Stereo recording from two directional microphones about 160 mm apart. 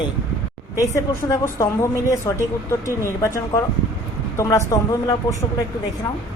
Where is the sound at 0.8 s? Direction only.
20° left (ahead or behind).